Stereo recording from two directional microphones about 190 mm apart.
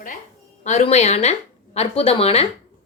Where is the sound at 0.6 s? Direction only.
35° left (ahead or behind).